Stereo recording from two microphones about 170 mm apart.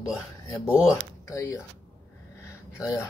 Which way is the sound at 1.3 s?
20° left (ahead or behind).